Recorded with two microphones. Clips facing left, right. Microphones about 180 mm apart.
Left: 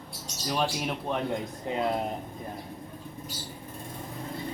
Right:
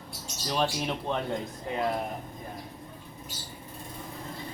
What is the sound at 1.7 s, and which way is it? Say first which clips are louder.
Speech: left 2 dB; 20° left (ahead or behind).